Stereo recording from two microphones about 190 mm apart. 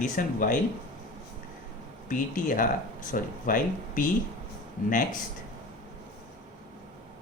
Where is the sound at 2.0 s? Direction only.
45° left (ahead or behind).